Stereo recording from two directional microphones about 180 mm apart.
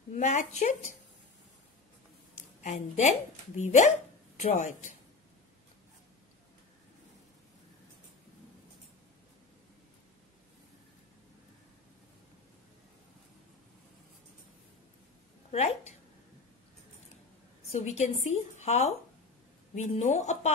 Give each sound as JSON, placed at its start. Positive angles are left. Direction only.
{"t": 0.1, "sound": "a woman's voice", "side_deg": 40}
{"t": 2.3, "sound": "speech", "side_deg": 40}
{"t": 15.5, "sound": "a woman's voice", "side_deg": 35}
{"t": 17.6, "sound": "a woman's voice", "side_deg": 35}